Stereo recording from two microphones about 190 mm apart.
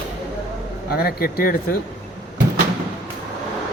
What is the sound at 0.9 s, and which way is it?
Speech, 55° left (ahead or behind).